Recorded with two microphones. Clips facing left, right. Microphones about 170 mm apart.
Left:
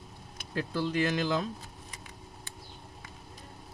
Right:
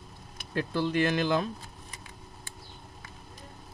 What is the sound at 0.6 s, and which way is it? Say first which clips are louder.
Speech: right 2 dB; 60° right (ahead or behind).